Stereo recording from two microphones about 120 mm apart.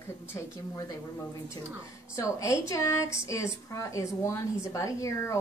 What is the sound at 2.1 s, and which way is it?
A woman's voice, 25° left (ahead or behind).